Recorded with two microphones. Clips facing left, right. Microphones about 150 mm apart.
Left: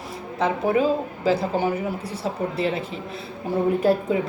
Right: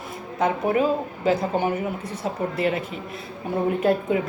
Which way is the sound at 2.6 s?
30° left (ahead or behind).